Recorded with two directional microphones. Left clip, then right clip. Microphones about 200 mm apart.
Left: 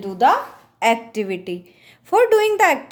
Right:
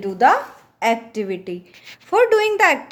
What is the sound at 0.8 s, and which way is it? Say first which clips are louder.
A woman's voice: left 1 dB; 5° left (ahead or behind).